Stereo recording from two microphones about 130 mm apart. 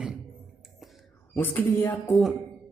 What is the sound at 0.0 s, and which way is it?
Beatboxing, 5° right (ahead or behind).